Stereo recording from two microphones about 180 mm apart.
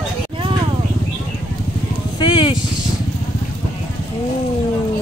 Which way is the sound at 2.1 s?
25° left (ahead or behind).